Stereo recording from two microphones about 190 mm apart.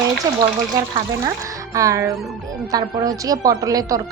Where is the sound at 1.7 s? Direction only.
15° right (ahead or behind).